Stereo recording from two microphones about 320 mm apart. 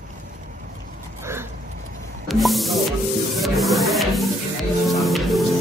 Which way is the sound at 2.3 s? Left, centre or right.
Centre.